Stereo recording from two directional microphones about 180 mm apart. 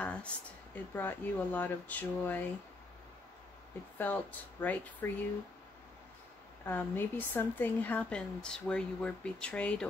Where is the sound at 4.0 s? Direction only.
10° left (ahead or behind).